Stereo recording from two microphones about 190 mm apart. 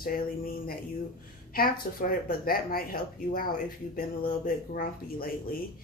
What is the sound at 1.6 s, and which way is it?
Speech, 50° left (ahead or behind).